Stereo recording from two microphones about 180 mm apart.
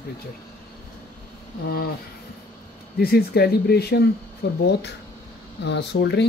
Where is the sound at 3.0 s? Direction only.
60° left (ahead or behind).